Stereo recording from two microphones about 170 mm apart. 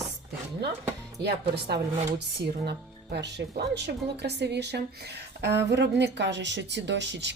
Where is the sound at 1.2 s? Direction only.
75° right (ahead or behind).